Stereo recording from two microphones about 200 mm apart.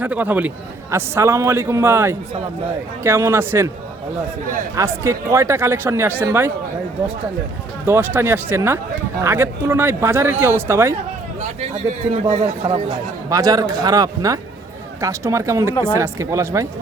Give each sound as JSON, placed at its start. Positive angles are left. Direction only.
{"t": 0.0, "sound": "a man's voice", "side_deg": -10}
{"t": 4.7, "sound": "a man's voice", "side_deg": -15}
{"t": 7.9, "sound": "a man's voice", "side_deg": -10}
{"t": 11.3, "sound": "a man's voice", "side_deg": -30}
{"t": 13.3, "sound": "a man's voice", "side_deg": -20}